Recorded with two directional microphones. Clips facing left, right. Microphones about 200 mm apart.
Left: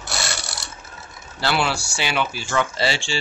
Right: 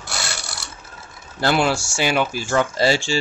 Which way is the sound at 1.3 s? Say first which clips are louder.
Right 4 dB; 45° right (ahead or behind).